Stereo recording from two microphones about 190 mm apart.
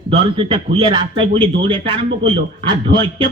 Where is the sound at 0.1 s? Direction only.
25° right (ahead or behind).